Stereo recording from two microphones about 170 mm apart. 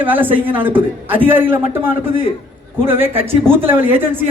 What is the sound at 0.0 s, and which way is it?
A man's voice, 10° right (ahead or behind).